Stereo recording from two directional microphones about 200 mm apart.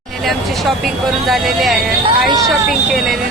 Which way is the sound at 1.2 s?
Centre (ahead or behind).